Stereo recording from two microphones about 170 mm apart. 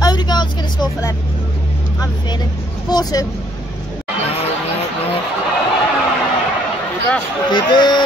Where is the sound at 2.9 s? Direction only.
25° left (ahead or behind).